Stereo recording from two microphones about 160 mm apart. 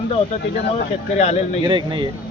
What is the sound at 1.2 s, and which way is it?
Speech, 40° left (ahead or behind).